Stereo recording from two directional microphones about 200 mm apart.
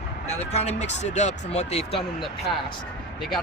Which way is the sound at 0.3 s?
30° left (ahead or behind).